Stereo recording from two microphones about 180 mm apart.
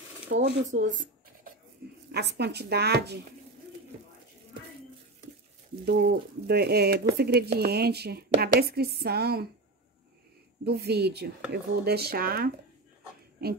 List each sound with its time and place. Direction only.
0.3 s speech: 75° right (ahead or behind)
2.1 s a woman's voice: 65° right (ahead or behind)
5.9 s a woman's voice: 65° right (ahead or behind)
10.6 s a woman's voice: 65° right (ahead or behind)